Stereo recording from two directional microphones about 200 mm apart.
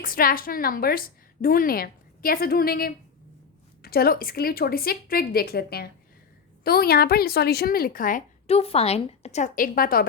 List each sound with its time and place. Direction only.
0.0 s a woman's voice: 45° left (ahead or behind)
8.4 s a woman's voice: 30° left (ahead or behind); by 10.1 s 45° left (ahead or behind)